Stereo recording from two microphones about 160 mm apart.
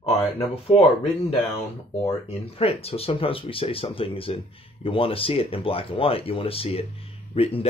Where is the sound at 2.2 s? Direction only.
40° left (ahead or behind).